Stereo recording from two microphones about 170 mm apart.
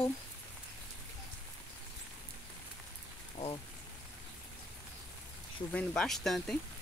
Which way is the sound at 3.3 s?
35° left (ahead or behind).